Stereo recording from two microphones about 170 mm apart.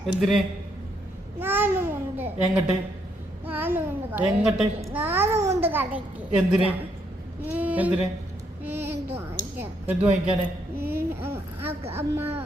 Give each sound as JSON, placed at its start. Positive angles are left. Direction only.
{"t": 0.0, "sound": "a man's voice", "side_deg": 0}
{"t": 1.4, "sound": "babbling", "side_deg": -10}
{"t": 3.4, "sound": "a child's voice", "side_deg": -10}
{"t": 10.8, "sound": "a sound", "side_deg": -65}
{"t": 11.2, "sound": "a sound", "side_deg": -10}
{"t": 11.7, "sound": "speech", "side_deg": -35}
{"t": 11.9, "sound": "speech", "side_deg": -15}